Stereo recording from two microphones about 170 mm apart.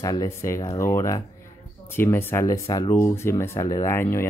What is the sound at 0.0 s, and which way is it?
Speech, 20° left (ahead or behind).